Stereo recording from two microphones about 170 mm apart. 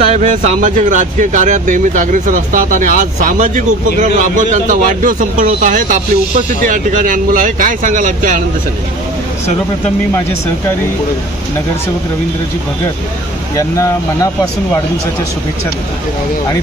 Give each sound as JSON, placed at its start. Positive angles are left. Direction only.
{"t": 0.1, "sound": "speech", "side_deg": -45}
{"t": 13.6, "sound": "speech", "side_deg": 20}